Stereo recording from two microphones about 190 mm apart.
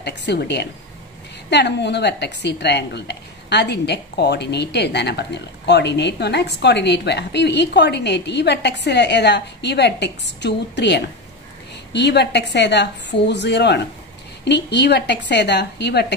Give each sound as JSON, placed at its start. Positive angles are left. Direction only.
{"t": 0.0, "sound": "a woman's voice", "side_deg": 60}